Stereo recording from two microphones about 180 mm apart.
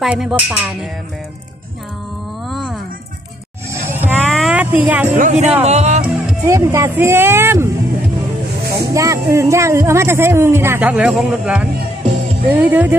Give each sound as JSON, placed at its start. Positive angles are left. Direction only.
{"t": 0.0, "sound": "speech", "side_deg": 0}
{"t": 2.5, "sound": "music", "side_deg": 0}
{"t": 3.7, "sound": "music", "side_deg": -10}
{"t": 4.2, "sound": "a sound", "side_deg": 0}
{"t": 5.1, "sound": "speech", "side_deg": -40}
{"t": 6.2, "sound": "speech", "side_deg": -15}
{"t": 8.7, "sound": "speech", "side_deg": -15}